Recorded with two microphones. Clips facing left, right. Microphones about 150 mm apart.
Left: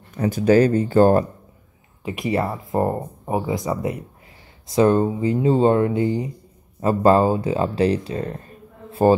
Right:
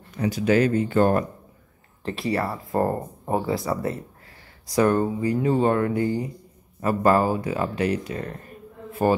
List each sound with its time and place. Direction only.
0.2 s speech: 40° left (ahead or behind)
2.0 s speech: 20° left (ahead or behind)